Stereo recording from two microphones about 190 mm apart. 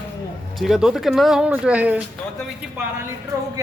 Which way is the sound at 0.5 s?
Centre (ahead or behind).